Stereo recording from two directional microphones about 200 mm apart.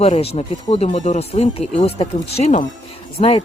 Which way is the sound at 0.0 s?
30° left (ahead or behind).